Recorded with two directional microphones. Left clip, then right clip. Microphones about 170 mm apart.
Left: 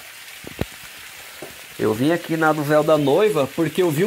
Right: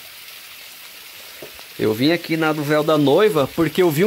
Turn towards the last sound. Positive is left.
turn(degrees=-20)  # may be behind; listen again after turning